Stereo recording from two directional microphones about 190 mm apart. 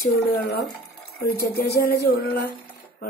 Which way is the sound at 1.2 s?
55° left (ahead or behind).